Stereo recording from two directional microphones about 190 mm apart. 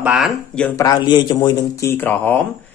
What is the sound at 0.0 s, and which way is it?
Speech, 5° right (ahead or behind).